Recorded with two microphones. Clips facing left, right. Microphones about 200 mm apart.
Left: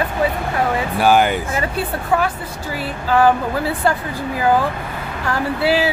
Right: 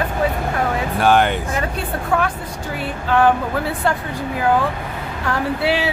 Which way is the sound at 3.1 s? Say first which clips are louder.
Left 1 dB; 5° left (ahead or behind).